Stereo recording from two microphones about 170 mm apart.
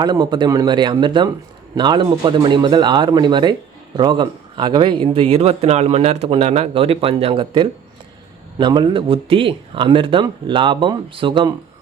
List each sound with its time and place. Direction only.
0.0 s speech: 25° right (ahead or behind)